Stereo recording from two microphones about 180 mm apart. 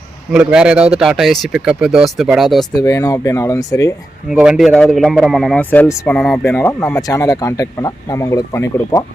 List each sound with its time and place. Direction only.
0.3 s a man's voice: 5° right (ahead or behind)
2.7 s a man's voice: 20° left (ahead or behind)
4.3 s a man's voice: 5° right (ahead or behind); by 9.0 s 15° left (ahead or behind)